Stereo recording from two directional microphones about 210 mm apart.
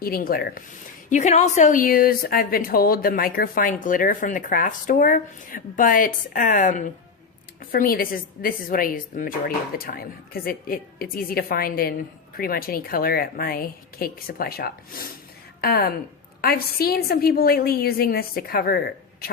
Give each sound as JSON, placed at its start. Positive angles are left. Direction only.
{"t": 0.0, "sound": "a woman's voice", "side_deg": 45}
{"t": 1.1, "sound": "a woman's voice", "side_deg": 35}